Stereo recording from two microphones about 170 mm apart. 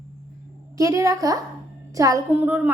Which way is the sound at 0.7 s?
20° right (ahead or behind).